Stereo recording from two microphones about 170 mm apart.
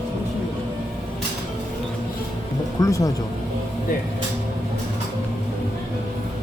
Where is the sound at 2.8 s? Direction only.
20° left (ahead or behind).